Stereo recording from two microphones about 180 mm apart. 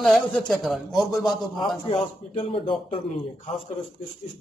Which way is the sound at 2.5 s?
30° left (ahead or behind).